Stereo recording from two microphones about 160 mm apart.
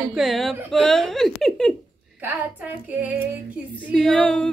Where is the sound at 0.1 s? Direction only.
Centre (ahead or behind).